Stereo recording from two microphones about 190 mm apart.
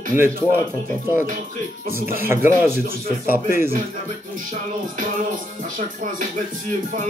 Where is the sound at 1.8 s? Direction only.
50° right (ahead or behind).